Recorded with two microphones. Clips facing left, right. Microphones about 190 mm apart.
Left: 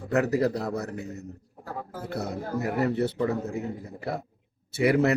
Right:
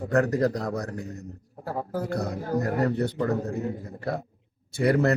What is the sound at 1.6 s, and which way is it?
Speech, 40° right (ahead or behind).